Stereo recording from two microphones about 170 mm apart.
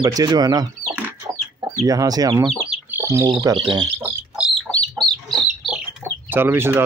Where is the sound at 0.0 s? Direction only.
20° right (ahead or behind).